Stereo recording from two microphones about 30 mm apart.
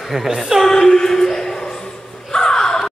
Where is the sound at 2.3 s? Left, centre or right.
Centre.